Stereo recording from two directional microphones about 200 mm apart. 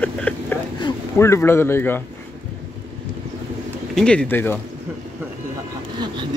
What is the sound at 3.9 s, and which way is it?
Speech, 5° left (ahead or behind).